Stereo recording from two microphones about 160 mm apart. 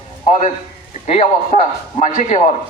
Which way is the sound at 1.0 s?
45° left (ahead or behind).